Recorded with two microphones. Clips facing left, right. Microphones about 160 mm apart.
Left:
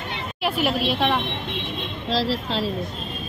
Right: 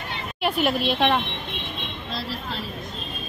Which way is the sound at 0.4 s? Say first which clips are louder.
Even; 5° left (ahead or behind).